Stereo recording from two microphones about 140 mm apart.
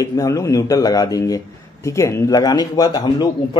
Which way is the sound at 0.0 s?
25° left (ahead or behind).